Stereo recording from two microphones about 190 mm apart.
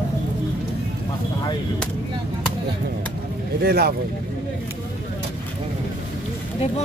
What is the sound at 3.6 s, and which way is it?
Speech, 55° right (ahead or behind).